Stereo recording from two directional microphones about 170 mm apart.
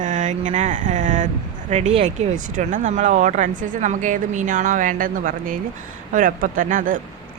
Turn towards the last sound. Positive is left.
turn(degrees=-50)  # may be behind; listen again after turning